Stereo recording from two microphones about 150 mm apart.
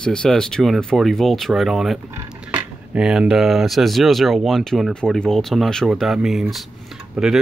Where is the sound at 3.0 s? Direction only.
5° right (ahead or behind).